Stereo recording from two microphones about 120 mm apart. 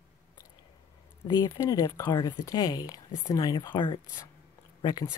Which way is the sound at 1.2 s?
35° left (ahead or behind).